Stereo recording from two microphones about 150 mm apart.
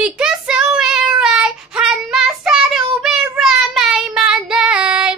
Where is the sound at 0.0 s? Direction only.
5° right (ahead or behind).